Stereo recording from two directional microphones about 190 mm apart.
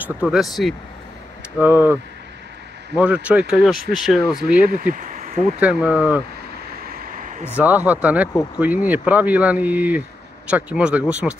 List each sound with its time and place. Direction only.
0.0 s speech: 5° right (ahead or behind)
4.6 s speech: 50° right (ahead or behind)
5.6 s speech: 5° right (ahead or behind)
7.5 s speech: 10° right (ahead or behind)